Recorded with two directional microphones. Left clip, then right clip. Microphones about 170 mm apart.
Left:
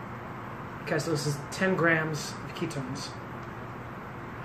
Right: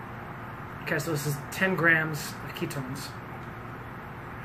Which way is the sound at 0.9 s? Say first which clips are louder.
Left 1 dB; centre (ahead or behind).